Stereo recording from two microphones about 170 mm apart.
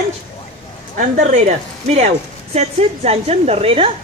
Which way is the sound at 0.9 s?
45° right (ahead or behind).